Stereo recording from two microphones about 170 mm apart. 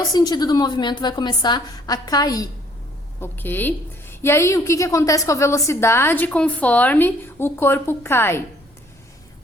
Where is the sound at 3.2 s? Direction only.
10° left (ahead or behind).